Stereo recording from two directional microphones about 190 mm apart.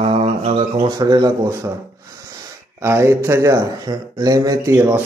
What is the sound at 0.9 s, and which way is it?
Speech, 20° right (ahead or behind).